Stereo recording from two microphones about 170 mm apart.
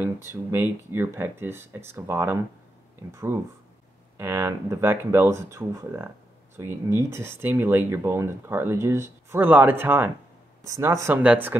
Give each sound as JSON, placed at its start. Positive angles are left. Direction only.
{"t": 0.3, "sound": "speech", "side_deg": -15}